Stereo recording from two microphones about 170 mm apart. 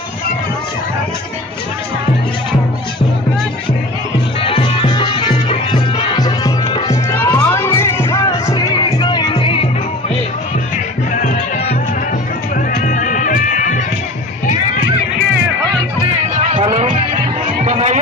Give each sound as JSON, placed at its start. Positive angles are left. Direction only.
{"t": 4.4, "sound": "music", "side_deg": 30}
{"t": 8.9, "sound": "music", "side_deg": 30}
{"t": 12.8, "sound": "music", "side_deg": 50}
{"t": 16.5, "sound": "music", "side_deg": -30}
{"t": 17.6, "sound": "music", "side_deg": -40}